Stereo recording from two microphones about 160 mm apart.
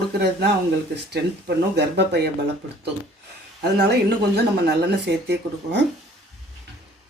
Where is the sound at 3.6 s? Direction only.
90° right.